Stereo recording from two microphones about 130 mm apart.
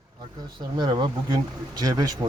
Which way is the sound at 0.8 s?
35° right (ahead or behind).